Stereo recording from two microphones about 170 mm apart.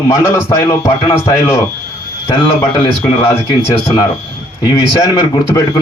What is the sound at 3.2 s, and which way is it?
A man's voice, 20° left (ahead or behind).